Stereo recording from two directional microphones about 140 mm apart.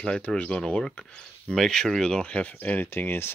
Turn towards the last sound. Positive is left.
turn(degrees=15)  # may be behind; listen again after turning